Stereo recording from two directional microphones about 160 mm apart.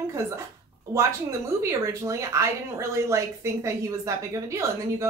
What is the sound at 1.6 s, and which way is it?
Speech, 20° right (ahead or behind).